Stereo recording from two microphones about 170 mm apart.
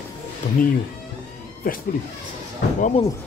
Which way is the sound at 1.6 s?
60° left (ahead or behind).